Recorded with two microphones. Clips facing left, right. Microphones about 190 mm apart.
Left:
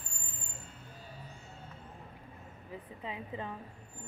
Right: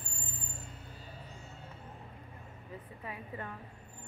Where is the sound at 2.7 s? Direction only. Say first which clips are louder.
Left 2 dB; 20° left (ahead or behind).